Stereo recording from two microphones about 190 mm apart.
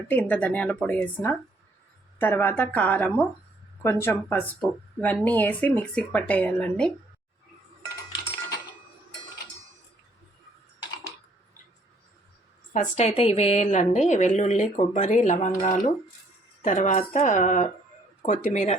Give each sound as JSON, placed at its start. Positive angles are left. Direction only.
{"t": 0.1, "sound": "a woman's voice", "side_deg": 5}
{"t": 12.7, "sound": "a woman's voice", "side_deg": 40}